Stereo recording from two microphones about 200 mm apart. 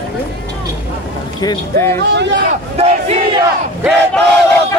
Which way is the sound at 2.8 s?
30° right (ahead or behind).